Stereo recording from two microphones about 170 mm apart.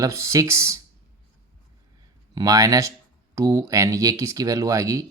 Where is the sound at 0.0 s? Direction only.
15° right (ahead or behind).